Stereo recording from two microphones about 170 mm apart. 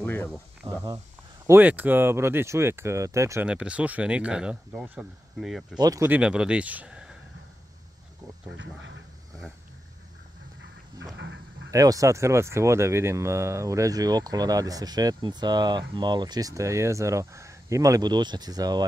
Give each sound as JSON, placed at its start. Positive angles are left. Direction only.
{"t": 0.0, "sound": "speech", "side_deg": 10}
{"t": 1.5, "sound": "speech", "side_deg": -10}
{"t": 3.4, "sound": "speech", "side_deg": -5}
{"t": 5.8, "sound": "speech", "side_deg": -20}
{"t": 6.0, "sound": "speech", "side_deg": -5}
{"t": 8.5, "sound": "speech", "side_deg": -90}
{"t": 11.1, "sound": "a sound", "side_deg": -90}
{"t": 11.7, "sound": "speech", "side_deg": -20}